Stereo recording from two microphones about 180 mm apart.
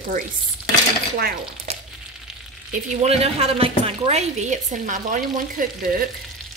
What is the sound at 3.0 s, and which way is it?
A woman's voice, 35° right (ahead or behind).